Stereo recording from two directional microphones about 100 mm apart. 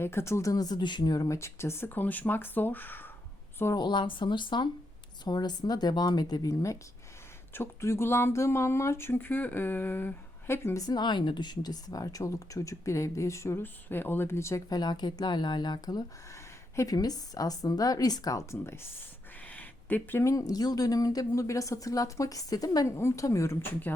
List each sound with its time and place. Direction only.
0.0 s speech: 25° left (ahead or behind)
0.5 s speech: 40° left (ahead or behind); by 3.1 s 20° left (ahead or behind)
3.8 s speech: 50° left (ahead or behind); by 10.8 s 25° left (ahead or behind)
10.8 s speech: 45° left (ahead or behind); by 14.6 s 30° left (ahead or behind)
14.7 s speech: 45° left (ahead or behind)
22.9 s speech: 30° left (ahead or behind)